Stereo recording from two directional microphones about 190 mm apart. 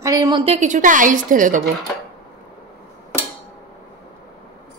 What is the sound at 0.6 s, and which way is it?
A woman's voice, 40° right (ahead or behind).